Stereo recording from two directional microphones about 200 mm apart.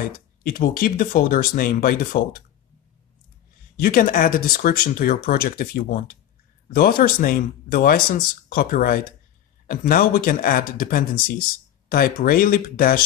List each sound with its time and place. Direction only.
0.0 s speech: 45° left (ahead or behind)
3.7 s speech: 45° left (ahead or behind)